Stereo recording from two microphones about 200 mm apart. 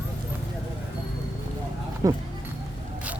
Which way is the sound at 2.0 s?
15° right (ahead or behind).